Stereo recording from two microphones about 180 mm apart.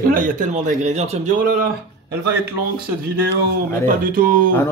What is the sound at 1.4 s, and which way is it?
Speech, 55° right (ahead or behind).